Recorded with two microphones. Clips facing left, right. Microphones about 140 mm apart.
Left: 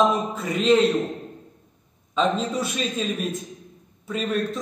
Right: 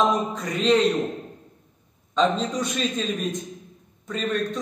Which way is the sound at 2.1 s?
5° left (ahead or behind).